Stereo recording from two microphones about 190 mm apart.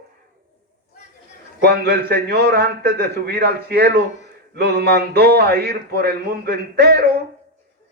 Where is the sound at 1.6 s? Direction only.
55° right (ahead or behind).